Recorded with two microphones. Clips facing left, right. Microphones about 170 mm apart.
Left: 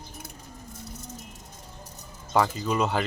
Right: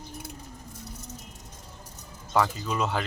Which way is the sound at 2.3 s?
Centre (ahead or behind).